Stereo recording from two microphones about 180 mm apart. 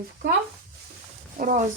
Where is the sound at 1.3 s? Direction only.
45° right (ahead or behind).